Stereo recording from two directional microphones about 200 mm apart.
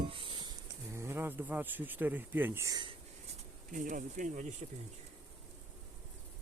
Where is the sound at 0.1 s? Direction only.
25° right (ahead or behind).